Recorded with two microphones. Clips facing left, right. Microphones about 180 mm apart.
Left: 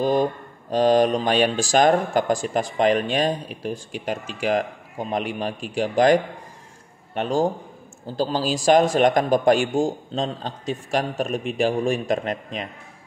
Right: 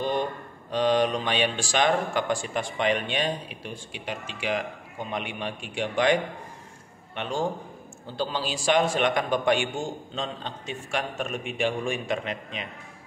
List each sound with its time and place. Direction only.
0.0 s speech: 40° left (ahead or behind)